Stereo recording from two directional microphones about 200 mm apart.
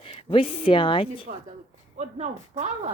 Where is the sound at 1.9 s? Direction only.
35° right (ahead or behind).